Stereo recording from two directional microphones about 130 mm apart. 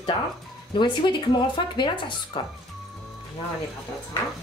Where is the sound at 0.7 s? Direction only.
35° left (ahead or behind).